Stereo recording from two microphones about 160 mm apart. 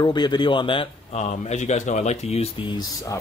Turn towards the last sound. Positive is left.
turn(degrees=20)  # may be behind; listen again after turning